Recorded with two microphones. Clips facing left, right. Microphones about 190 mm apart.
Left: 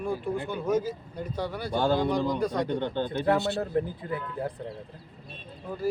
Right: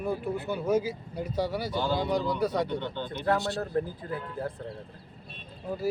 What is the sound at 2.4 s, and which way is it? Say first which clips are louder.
Speech: even; 5° right (ahead or behind).